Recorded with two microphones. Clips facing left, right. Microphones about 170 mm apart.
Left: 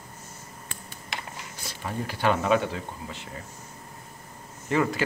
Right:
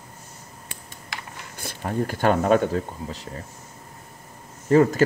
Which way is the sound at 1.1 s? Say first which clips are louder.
Left 1 dB; 25° left (ahead or behind).